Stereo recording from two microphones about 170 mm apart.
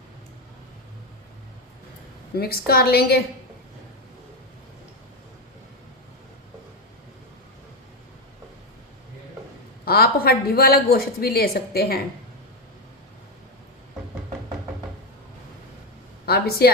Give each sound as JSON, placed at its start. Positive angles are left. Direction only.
{"t": 2.3, "sound": "a woman's voice", "side_deg": 65}
{"t": 9.8, "sound": "a woman's voice", "side_deg": 65}
{"t": 16.2, "sound": "a woman's voice", "side_deg": 65}